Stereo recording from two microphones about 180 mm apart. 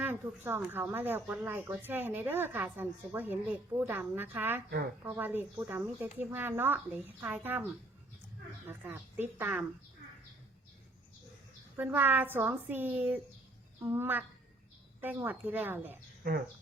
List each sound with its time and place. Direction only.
0.0 s speech: 10° right (ahead or behind)
8.6 s speech: 10° right (ahead or behind)
11.8 s speech: 10° right (ahead or behind)
16.2 s speech: 50° right (ahead or behind)